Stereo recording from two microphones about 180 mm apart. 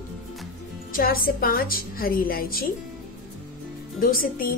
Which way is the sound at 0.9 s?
55° left (ahead or behind).